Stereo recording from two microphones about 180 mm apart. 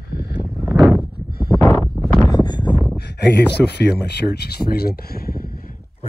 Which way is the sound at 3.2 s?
70° left (ahead or behind).